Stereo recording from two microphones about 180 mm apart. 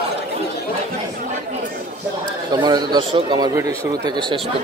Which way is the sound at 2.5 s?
25° right (ahead or behind).